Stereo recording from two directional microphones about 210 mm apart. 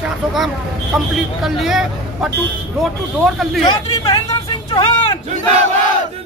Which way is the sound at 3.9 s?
20° left (ahead or behind).